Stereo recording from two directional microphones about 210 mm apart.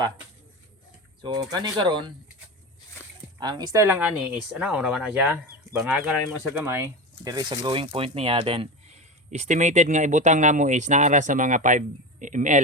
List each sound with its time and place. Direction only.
1.2 s speech: 20° right (ahead or behind)
3.4 s speech: 15° right (ahead or behind); by 12.5 s 35° right (ahead or behind)